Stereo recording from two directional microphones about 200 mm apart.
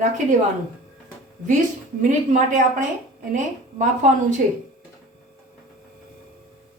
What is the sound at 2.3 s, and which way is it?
Speech, 40° right (ahead or behind).